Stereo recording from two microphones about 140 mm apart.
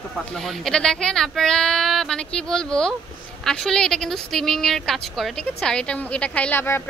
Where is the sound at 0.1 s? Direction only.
Centre (ahead or behind).